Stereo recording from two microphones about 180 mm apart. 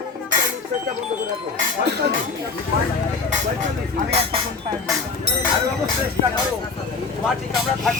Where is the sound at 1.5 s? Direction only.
55° right (ahead or behind).